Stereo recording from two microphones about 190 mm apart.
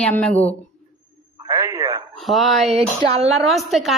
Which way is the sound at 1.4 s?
20° right (ahead or behind).